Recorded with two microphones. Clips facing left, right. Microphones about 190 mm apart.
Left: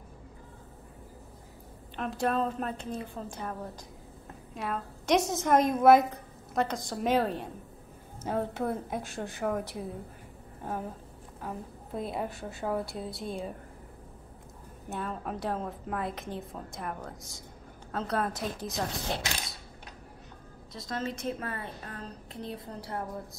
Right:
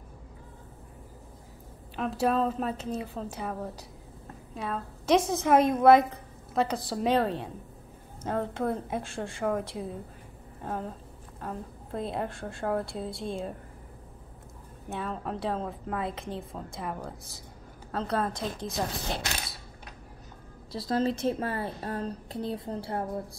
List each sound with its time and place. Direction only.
2.0 s a woman's voice: 5° right (ahead or behind)
4.6 s a woman's voice: centre (ahead or behind)
14.9 s a woman's voice: centre (ahead or behind)
20.7 s a woman's voice: 35° right (ahead or behind)